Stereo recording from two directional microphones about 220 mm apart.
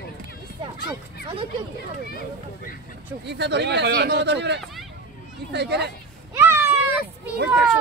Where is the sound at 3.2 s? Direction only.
50° right (ahead or behind).